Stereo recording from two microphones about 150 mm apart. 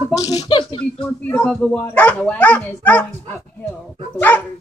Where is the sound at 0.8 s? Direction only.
10° left (ahead or behind).